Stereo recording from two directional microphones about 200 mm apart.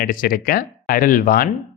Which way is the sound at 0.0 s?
45° left (ahead or behind).